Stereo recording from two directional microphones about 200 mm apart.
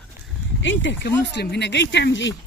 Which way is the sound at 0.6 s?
65° left (ahead or behind).